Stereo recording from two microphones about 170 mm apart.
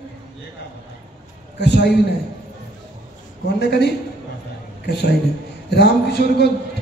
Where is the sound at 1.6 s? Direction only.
75° left (ahead or behind).